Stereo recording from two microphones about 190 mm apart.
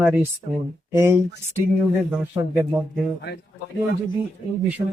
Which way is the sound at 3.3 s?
55° left (ahead or behind).